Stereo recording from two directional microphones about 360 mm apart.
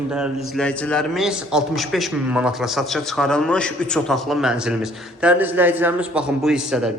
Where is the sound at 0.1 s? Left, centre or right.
Centre.